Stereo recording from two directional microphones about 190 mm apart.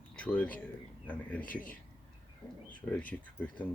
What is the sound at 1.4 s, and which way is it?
Speech, 45° left (ahead or behind).